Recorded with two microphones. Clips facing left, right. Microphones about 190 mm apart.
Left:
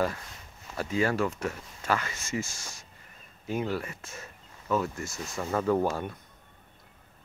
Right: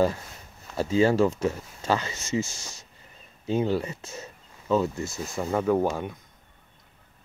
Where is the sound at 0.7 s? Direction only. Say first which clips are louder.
Right 6 dB; 25° right (ahead or behind).